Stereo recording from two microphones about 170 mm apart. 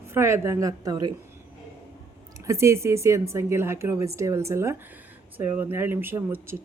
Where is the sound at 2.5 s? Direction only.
15° right (ahead or behind).